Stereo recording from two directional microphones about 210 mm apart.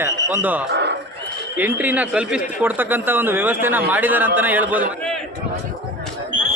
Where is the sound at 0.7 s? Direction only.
55° right (ahead or behind).